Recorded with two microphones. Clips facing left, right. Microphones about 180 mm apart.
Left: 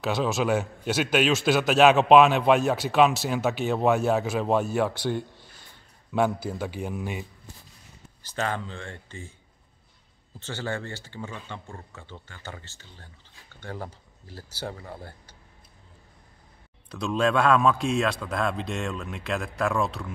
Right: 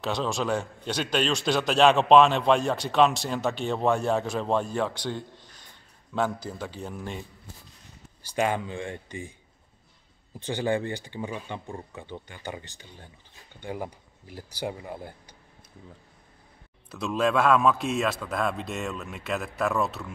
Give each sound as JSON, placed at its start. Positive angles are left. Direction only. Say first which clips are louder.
{"t": 0.0, "sound": "a man's voice", "louder": "left 3 dB", "side_deg": 5}
{"t": 8.2, "sound": "speech", "louder": "right 4 dB", "side_deg": -15}
{"t": 10.4, "sound": "speech", "louder": "right 6 dB", "side_deg": -15}
{"t": 16.9, "sound": "a man's voice", "louder": "left 1 dB", "side_deg": -5}